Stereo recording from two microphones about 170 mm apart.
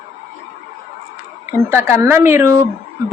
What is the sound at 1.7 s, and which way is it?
Speech, 15° right (ahead or behind).